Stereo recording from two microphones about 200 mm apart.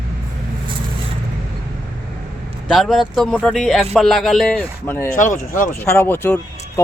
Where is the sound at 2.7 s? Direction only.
Centre (ahead or behind).